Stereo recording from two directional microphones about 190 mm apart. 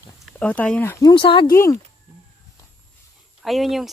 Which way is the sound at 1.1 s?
25° left (ahead or behind).